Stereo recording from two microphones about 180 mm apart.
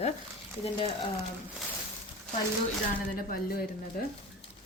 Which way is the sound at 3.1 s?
55° left (ahead or behind).